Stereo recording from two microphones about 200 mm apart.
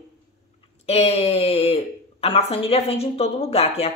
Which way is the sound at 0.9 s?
30° left (ahead or behind).